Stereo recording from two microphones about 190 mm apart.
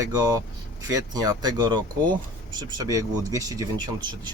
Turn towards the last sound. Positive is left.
turn(degrees=-20)  # may be behind; listen again after turning